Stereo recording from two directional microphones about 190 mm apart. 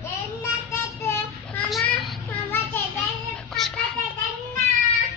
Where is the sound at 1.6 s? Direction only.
Centre (ahead or behind).